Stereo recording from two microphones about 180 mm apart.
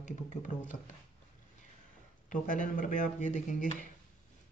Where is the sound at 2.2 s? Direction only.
45° left (ahead or behind).